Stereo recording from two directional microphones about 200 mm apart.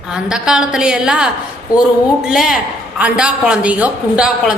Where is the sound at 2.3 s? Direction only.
Centre (ahead or behind).